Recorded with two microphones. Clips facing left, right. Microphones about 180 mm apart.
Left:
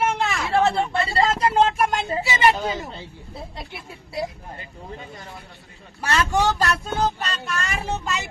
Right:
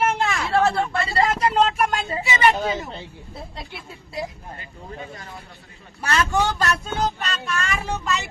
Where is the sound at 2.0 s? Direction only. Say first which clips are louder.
Even; 30° left (ahead or behind).